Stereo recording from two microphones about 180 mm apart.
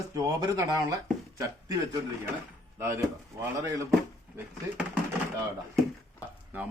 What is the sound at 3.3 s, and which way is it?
Speech, 15° right (ahead or behind).